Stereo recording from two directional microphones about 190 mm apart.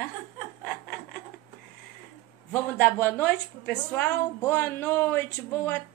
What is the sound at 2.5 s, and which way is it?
A woman's voice, 10° left (ahead or behind).